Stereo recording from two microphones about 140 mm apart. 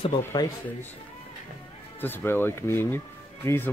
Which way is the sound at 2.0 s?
15° left (ahead or behind).